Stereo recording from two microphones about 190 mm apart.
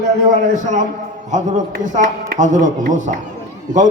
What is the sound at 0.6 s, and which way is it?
Speech, 40° right (ahead or behind).